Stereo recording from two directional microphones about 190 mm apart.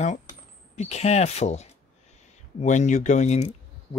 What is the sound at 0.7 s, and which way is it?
Speech, 35° left (ahead or behind).